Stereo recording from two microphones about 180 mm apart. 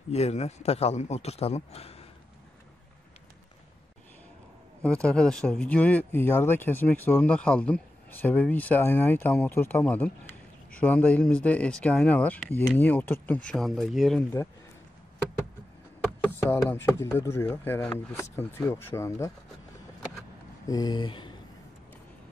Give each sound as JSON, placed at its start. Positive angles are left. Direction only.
{"t": 0.1, "sound": "a man's voice", "side_deg": 35}
{"t": 4.8, "sound": "speech", "side_deg": 5}
{"t": 16.3, "sound": "speech", "side_deg": 10}
{"t": 20.6, "sound": "a sound", "side_deg": 20}